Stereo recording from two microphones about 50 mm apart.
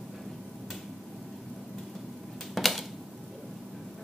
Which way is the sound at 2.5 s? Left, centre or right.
Centre.